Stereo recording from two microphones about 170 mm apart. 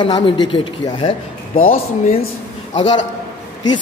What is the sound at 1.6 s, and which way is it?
Speech, 55° left (ahead or behind).